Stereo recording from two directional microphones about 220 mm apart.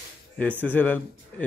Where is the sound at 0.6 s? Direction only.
10° left (ahead or behind).